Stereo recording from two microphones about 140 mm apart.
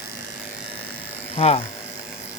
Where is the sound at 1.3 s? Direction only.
45° left (ahead or behind).